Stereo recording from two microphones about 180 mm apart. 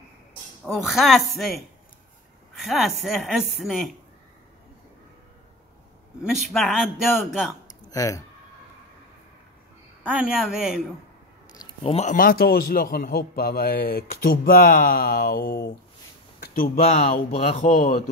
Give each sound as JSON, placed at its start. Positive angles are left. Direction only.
{"t": 0.7, "sound": "a woman's voice", "side_deg": 0}
{"t": 6.2, "sound": "a woman's voice", "side_deg": 0}
{"t": 7.9, "sound": "speech", "side_deg": 20}
{"t": 10.0, "sound": "a woman's voice", "side_deg": -5}
{"t": 11.5, "sound": "a man's voice", "side_deg": 30}
{"t": 16.3, "sound": "a sound", "side_deg": 55}
{"t": 16.8, "sound": "speech", "side_deg": 35}